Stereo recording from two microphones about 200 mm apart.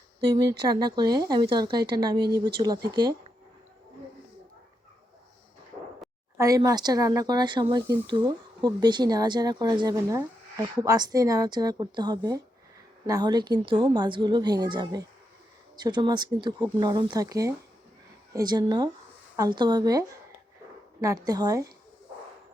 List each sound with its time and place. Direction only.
0.3 s speech: 20° right (ahead or behind)
6.3 s speech: 15° right (ahead or behind)
21.2 s a woman's voice: 20° right (ahead or behind)